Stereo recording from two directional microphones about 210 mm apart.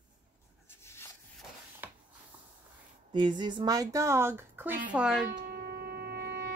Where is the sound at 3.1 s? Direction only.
20° right (ahead or behind); by 5.3 s 5° right (ahead or behind).